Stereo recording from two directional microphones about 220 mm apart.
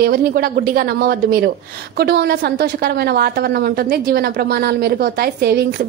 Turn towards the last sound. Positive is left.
turn(degrees=-45)  # may be behind; listen again after turning